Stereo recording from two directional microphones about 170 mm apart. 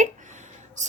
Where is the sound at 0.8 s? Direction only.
45° right (ahead or behind).